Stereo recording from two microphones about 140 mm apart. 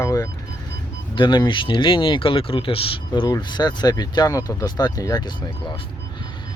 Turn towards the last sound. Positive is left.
turn(degrees=30)  # may be behind; listen again after turning